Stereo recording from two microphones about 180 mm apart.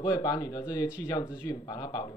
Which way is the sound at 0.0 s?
20° left (ahead or behind).